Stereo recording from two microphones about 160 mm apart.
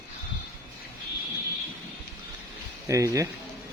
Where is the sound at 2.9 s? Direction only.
20° right (ahead or behind).